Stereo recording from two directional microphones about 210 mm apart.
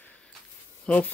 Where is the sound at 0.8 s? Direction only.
5° left (ahead or behind).